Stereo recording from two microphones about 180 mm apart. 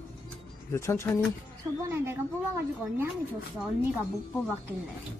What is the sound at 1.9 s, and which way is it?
A woman's voice, 15° right (ahead or behind).